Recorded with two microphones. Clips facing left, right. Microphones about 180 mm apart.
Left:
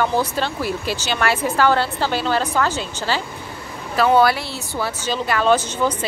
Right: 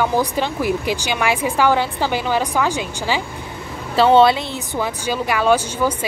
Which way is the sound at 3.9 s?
25° right (ahead or behind).